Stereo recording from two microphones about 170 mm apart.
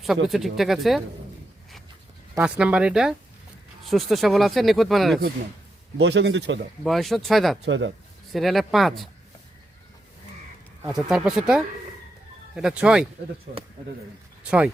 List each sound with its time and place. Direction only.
0.3 s speech: centre (ahead or behind)
2.4 s speech: 5° right (ahead or behind)
6.0 s speech: 90° right
6.8 s speech: centre (ahead or behind)
7.6 s speech: 90° right
8.3 s speech: centre (ahead or behind)
10.8 s speech: 5° right (ahead or behind)
13.5 s speech: 70° right (ahead or behind)
14.4 s speech: 5° right (ahead or behind)